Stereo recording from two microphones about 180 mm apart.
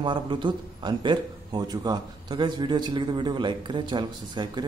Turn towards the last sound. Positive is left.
turn(degrees=-25)  # may be behind; listen again after turning